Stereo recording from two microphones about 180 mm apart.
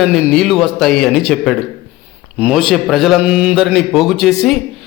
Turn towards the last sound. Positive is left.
turn(degrees=0)  # may be behind; listen again after turning